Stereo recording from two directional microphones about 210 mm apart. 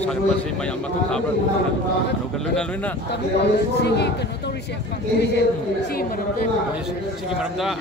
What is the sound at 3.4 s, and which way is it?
Speech, 55° left (ahead or behind).